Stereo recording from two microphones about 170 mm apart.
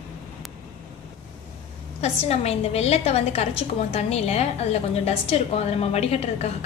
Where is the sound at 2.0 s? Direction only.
35° left (ahead or behind).